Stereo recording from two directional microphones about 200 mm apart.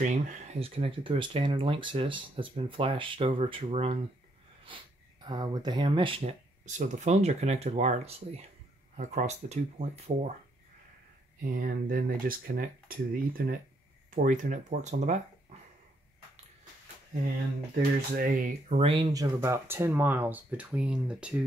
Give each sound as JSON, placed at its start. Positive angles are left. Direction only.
{"t": 0.0, "sound": "speech", "side_deg": -35}
{"t": 11.6, "sound": "speech", "side_deg": -45}
{"t": 18.1, "sound": "speech", "side_deg": -40}
{"t": 19.4, "sound": "speech", "side_deg": -10}